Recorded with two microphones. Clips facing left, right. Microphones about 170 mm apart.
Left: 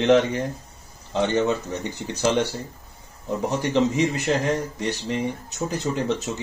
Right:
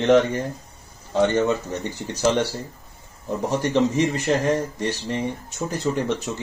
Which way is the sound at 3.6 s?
15° left (ahead or behind).